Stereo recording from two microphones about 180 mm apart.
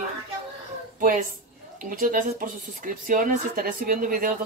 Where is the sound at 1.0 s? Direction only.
45° right (ahead or behind).